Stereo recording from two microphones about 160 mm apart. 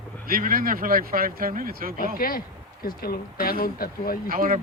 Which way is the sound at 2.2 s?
60° left (ahead or behind).